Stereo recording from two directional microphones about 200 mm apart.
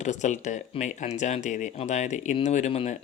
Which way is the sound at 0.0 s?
35° left (ahead or behind).